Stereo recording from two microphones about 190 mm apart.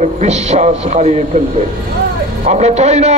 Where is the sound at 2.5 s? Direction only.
35° right (ahead or behind).